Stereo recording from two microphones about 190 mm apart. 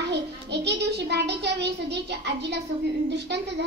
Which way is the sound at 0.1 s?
65° right (ahead or behind).